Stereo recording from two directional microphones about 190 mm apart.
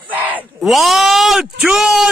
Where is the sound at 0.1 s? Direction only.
5° right (ahead or behind).